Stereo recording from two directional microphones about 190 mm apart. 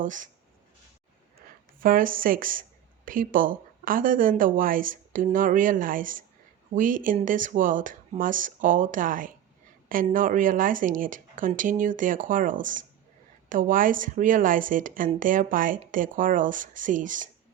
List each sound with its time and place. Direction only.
0.0 s a woman's voice: 45° right (ahead or behind)
1.4 s a woman's voice: 45° right (ahead or behind)